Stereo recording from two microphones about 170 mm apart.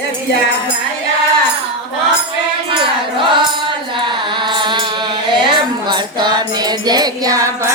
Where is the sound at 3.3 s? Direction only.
30° right (ahead or behind).